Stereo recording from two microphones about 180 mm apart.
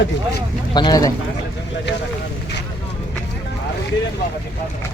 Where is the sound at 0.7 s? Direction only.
25° left (ahead or behind).